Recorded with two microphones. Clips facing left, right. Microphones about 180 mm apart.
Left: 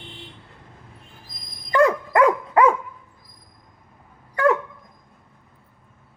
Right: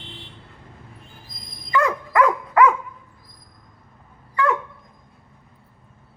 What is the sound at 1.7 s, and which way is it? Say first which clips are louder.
Dog: left 3 dB; 30° left (ahead or behind).